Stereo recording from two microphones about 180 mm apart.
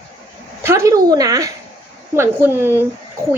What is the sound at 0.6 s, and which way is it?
Speech, 15° right (ahead or behind).